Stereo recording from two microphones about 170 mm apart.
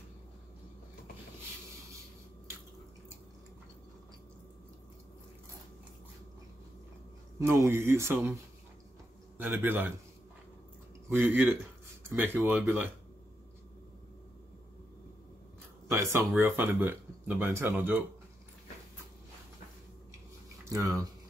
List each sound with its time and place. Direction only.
7.3 s speech: 15° right (ahead or behind)
9.4 s speech: 10° right (ahead or behind)
11.1 s speech: 15° right (ahead or behind)
15.9 s speech: 15° right (ahead or behind)
20.7 s speech: 20° right (ahead or behind)